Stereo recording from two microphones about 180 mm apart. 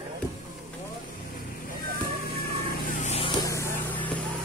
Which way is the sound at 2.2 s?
50° left (ahead or behind).